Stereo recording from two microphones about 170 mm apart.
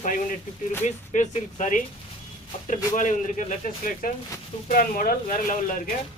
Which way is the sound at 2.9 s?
50° left (ahead or behind).